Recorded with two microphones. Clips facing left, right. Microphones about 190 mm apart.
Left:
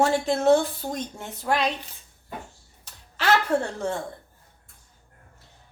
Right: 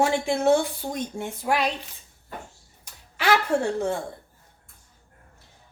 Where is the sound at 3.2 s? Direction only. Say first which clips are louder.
Even; 10° right (ahead or behind).